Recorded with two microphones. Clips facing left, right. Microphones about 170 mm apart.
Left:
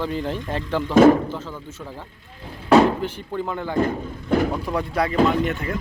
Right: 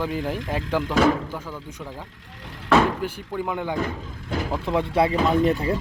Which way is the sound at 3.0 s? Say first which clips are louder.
Left 1 dB; 10° right (ahead or behind).